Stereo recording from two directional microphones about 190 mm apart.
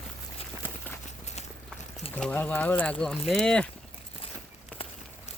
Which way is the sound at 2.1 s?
10° left (ahead or behind).